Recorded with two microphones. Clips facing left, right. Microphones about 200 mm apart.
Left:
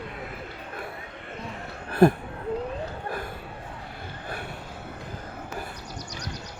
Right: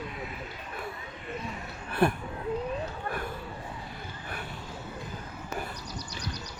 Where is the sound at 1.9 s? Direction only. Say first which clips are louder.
Left 7 dB; 35° left (ahead or behind).